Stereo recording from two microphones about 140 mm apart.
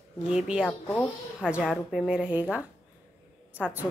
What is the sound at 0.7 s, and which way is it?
Speech, 10° left (ahead or behind).